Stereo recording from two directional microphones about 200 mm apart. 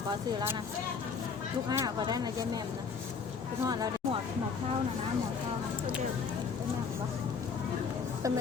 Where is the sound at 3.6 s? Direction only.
20° right (ahead or behind).